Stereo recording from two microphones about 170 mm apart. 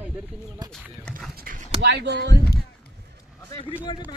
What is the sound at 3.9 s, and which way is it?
Speech, 30° left (ahead or behind).